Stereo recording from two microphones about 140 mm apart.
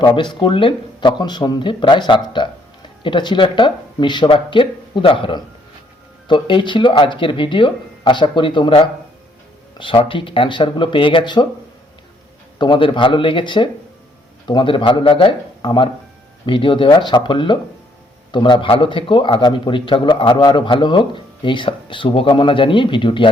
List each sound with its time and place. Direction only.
0.0 s a man's voice: 35° left (ahead or behind)
12.5 s a man's voice: 35° left (ahead or behind)